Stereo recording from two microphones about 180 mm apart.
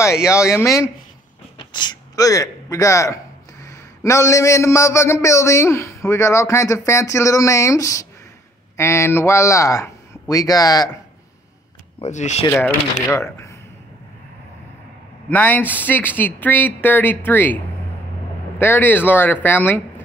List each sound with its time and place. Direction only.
0.3 s a man's voice: 15° left (ahead or behind)
12.0 s speech: 40° left (ahead or behind)
13.1 s speech: 15° left (ahead or behind)
15.2 s a man's voice: 10° left (ahead or behind)
18.6 s a man's voice: 10° left (ahead or behind)